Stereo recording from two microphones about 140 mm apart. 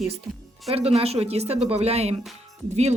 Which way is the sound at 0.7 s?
45° right (ahead or behind).